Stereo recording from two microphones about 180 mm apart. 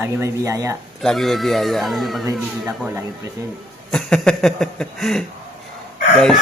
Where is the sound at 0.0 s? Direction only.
15° right (ahead or behind).